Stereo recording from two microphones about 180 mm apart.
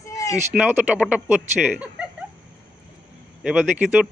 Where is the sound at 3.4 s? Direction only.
Centre (ahead or behind).